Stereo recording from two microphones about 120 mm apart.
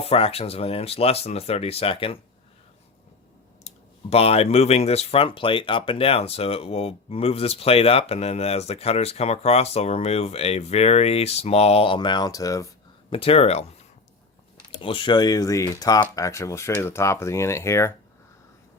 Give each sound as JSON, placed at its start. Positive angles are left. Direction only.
{"t": 0.0, "sound": "speech", "side_deg": 55}
{"t": 3.7, "sound": "clicking", "side_deg": 65}
{"t": 4.1, "sound": "speech", "side_deg": 55}
{"t": 13.1, "sound": "speech", "side_deg": 50}
{"t": 14.7, "sound": "speech", "side_deg": 45}